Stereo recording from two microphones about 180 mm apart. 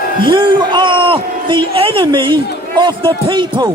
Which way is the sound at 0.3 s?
25° right (ahead or behind).